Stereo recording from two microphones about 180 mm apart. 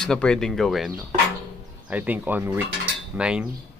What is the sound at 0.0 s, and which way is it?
Speech, 5° left (ahead or behind).